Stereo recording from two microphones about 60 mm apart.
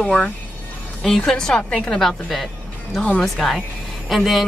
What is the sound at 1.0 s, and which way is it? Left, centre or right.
A woman's voice, centre.